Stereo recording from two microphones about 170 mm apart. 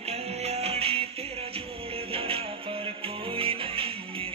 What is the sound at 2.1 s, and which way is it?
Music, 35° right (ahead or behind).